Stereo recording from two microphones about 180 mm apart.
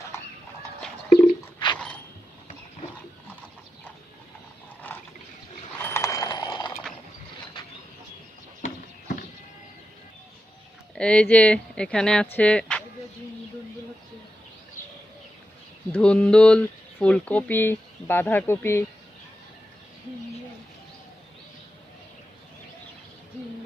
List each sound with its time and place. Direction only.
1.5 s a sound: 25° left (ahead or behind)
4.9 s water: 10° left (ahead or behind)
5.8 s clip-clop: 15° left (ahead or behind)
10.9 s speech: 5° left (ahead or behind)
15.9 s speech: 5° left (ahead or behind)